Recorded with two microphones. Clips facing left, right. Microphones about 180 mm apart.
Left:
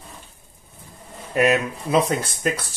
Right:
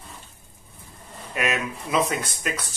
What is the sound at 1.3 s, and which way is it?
Speech, 35° left (ahead or behind).